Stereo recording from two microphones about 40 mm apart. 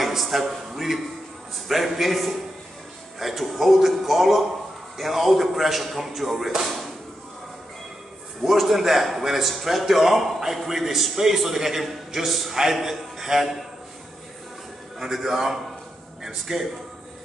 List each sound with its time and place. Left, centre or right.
0.0 s a sound: centre
1.7 s a man's voice: centre
8.5 s a man's voice: centre
15.0 s a man's voice: centre